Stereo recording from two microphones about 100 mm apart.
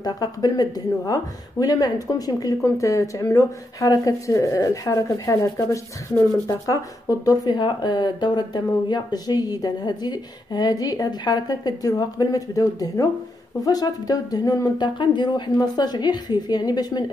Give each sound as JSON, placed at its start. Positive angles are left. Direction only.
{"t": 0.0, "sound": "a woman's voice", "side_deg": 40}
{"t": 7.4, "sound": "a woman's voice", "side_deg": 45}